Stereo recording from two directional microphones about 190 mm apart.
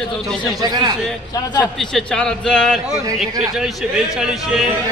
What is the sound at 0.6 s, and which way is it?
Speech, 20° right (ahead or behind).